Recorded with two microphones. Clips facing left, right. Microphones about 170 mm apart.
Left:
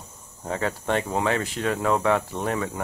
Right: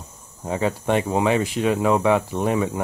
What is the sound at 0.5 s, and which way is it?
Speech, 15° right (ahead or behind).